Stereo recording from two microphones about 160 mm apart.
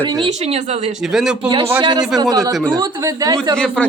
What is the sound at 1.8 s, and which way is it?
Speech, 30° right (ahead or behind).